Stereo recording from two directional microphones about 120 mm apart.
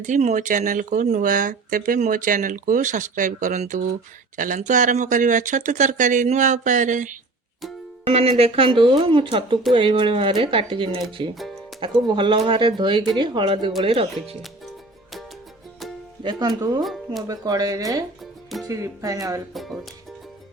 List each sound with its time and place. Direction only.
0.0 s speech: 80° right
8.0 s speech: 55° right (ahead or behind)
16.2 s speech: 35° right (ahead or behind)
18.2 s music: centre (ahead or behind)
18.7 s speech: 30° right (ahead or behind)
19.5 s speech: centre (ahead or behind)